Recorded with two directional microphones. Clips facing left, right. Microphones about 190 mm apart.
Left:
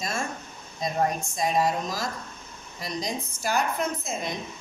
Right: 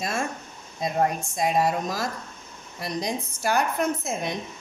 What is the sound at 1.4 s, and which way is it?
Speech, 55° right (ahead or behind).